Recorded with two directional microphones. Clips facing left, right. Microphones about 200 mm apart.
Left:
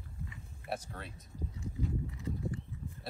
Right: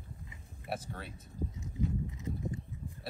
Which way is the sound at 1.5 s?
20° right (ahead or behind).